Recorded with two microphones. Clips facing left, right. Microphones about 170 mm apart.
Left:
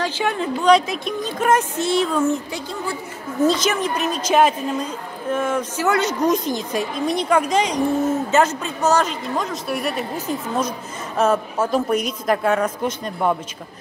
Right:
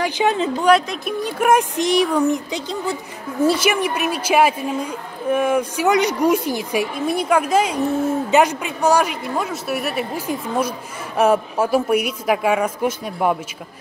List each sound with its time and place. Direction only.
0.0 s a woman's voice: 20° right (ahead or behind)
0.7 s a woman's voice: 5° right (ahead or behind)